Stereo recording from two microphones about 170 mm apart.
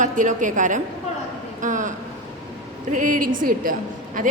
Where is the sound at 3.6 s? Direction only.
55° right (ahead or behind).